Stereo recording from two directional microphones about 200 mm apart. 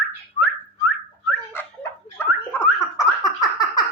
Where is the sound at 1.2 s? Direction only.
10° left (ahead or behind).